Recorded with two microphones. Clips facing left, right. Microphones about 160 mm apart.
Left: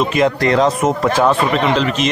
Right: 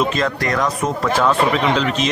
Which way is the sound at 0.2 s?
25° left (ahead or behind).